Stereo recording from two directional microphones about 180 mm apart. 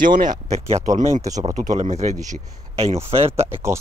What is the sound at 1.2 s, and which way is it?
Speech, 20° right (ahead or behind).